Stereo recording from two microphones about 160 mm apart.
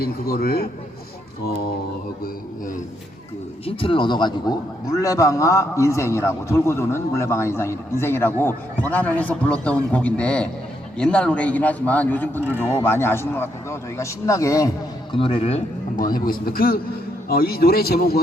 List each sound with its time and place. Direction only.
0.0 s speech: 70° left (ahead or behind)
2.2 s a man's voice: 55° left (ahead or behind)
3.7 s a man's voice: 35° left (ahead or behind)
15.2 s speech: 35° left (ahead or behind)
16.2 s speech: 65° left (ahead or behind)